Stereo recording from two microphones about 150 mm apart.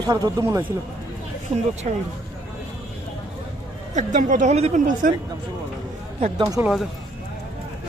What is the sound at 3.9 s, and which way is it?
A woman's voice, 55° right (ahead or behind).